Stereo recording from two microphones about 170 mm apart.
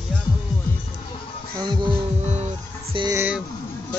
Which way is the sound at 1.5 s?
25° right (ahead or behind).